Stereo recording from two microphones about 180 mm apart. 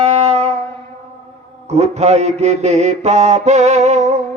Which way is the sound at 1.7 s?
35° right (ahead or behind).